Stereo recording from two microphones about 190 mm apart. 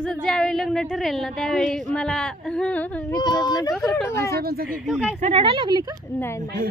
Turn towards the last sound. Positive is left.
turn(degrees=-25)  # may be behind; listen again after turning